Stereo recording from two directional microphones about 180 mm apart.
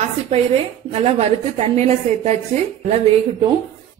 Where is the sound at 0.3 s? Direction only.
35° right (ahead or behind).